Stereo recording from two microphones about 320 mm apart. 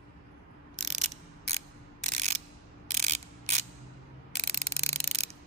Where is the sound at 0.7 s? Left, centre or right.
Right.